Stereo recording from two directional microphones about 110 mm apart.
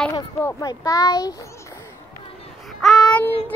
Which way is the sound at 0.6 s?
35° left (ahead or behind).